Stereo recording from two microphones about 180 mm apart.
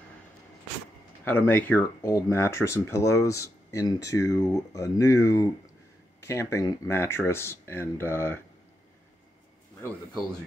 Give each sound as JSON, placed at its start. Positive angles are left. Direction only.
{"t": 1.2, "sound": "speech", "side_deg": 10}